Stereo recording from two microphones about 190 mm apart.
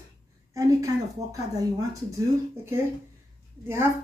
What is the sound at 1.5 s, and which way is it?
Speech, 15° right (ahead or behind).